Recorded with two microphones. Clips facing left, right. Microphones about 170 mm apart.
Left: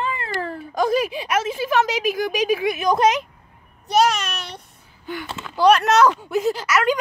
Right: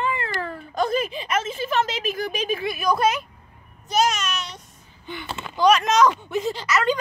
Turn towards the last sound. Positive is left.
turn(degrees=10)  # may be behind; listen again after turning